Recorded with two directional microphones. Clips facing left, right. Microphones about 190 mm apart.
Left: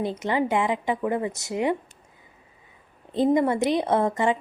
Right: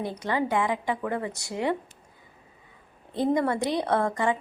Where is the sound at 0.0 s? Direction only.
20° left (ahead or behind).